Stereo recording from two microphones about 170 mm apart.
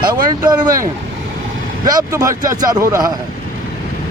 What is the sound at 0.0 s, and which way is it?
Speech, 25° right (ahead or behind).